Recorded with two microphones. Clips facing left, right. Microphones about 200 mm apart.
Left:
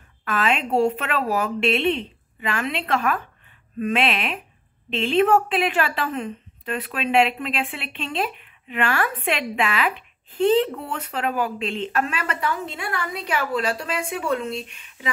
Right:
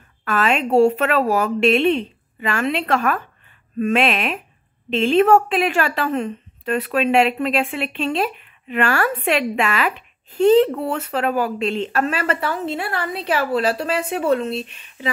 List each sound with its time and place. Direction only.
0.2 s a woman's voice: 45° right (ahead or behind)